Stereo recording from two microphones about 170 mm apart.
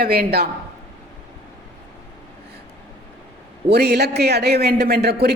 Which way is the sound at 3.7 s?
70° right (ahead or behind).